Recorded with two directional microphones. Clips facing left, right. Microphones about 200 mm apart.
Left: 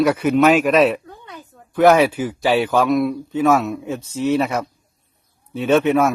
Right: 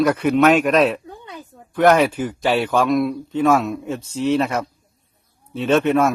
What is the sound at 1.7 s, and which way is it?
A man's voice, 5° left (ahead or behind).